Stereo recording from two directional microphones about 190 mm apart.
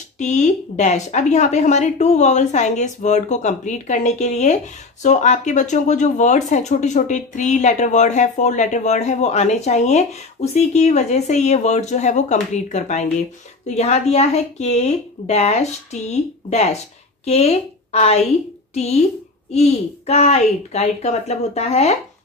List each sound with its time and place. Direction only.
0.2 s speech: 40° left (ahead or behind)